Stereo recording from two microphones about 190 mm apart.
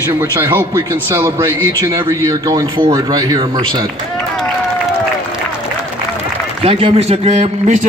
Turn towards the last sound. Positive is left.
turn(degrees=-35)  # may be behind; listen again after turning